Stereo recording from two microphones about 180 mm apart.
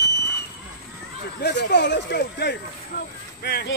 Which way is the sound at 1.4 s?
70° left (ahead or behind).